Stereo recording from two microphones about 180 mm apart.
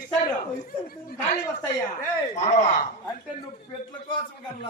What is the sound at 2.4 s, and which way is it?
Speech, 40° left (ahead or behind).